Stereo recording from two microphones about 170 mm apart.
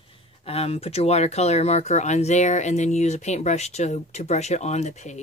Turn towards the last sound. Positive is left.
turn(degrees=45)  # may be behind; listen again after turning